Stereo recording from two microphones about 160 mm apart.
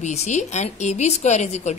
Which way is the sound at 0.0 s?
45° left (ahead or behind).